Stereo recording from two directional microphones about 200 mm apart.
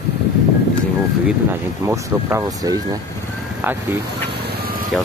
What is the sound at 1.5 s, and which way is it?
Speech, 15° right (ahead or behind).